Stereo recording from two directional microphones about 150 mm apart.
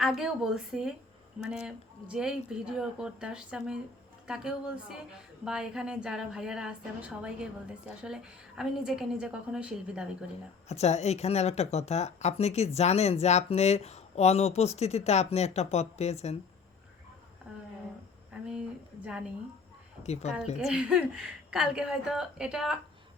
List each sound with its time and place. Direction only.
0.0 s a woman's voice: 5° right (ahead or behind)
10.7 s speech: 45° left (ahead or behind)
20.6 s a woman's voice: 5° right (ahead or behind)